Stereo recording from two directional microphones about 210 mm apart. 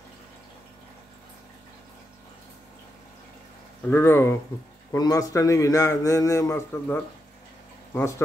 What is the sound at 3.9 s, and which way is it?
A man's voice, 10° left (ahead or behind).